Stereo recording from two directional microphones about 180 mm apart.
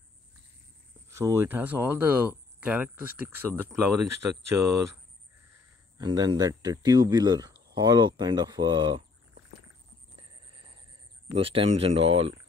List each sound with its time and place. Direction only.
1.1 s speech: 15° right (ahead or behind)
5.9 s speech: 25° right (ahead or behind)
11.3 s speech: 30° right (ahead or behind)